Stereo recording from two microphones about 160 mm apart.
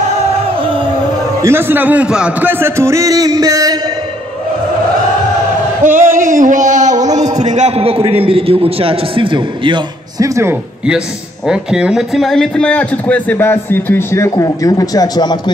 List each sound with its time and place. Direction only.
1.4 s a man's voice: 15° right (ahead or behind)
5.9 s a man's voice: 50° right (ahead or behind); by 10.5 s 20° right (ahead or behind)
11.4 s a man's voice: 5° right (ahead or behind); by 15.5 s 25° left (ahead or behind)